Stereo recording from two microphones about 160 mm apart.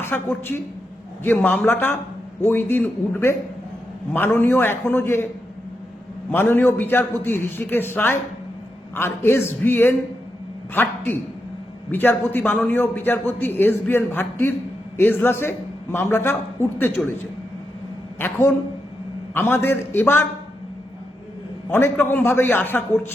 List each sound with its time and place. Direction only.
0.0 s a woman's voice: 15° left (ahead or behind)
4.4 s a man's voice: 15° left (ahead or behind)
6.3 s a man's voice: 15° left (ahead or behind)
18.2 s a man's voice: 15° left (ahead or behind)
21.7 s a man's voice: 15° left (ahead or behind)